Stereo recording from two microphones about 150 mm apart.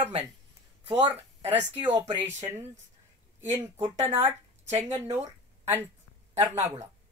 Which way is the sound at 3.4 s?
15° right (ahead or behind).